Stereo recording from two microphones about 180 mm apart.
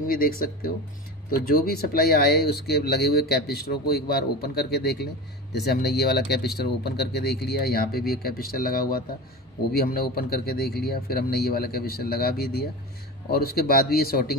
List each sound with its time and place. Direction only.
0.1 s speech: 55° left (ahead or behind)